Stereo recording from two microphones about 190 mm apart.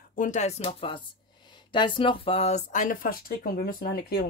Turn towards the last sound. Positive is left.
turn(degrees=55)  # may be behind; listen again after turning